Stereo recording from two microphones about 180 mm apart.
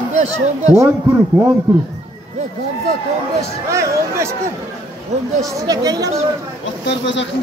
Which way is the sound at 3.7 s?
15° right (ahead or behind).